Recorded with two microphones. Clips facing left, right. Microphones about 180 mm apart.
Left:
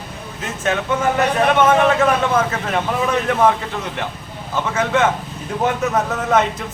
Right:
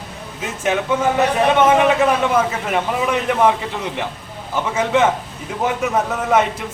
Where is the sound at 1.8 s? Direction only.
10° right (ahead or behind).